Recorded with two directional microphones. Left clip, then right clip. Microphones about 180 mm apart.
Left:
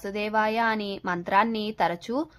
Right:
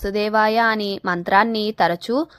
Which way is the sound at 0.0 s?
30° right (ahead or behind).